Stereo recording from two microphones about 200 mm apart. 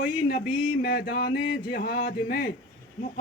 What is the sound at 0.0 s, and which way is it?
A man's voice, 45° left (ahead or behind).